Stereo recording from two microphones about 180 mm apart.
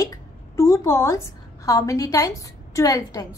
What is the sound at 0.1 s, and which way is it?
A woman's voice, 15° left (ahead or behind).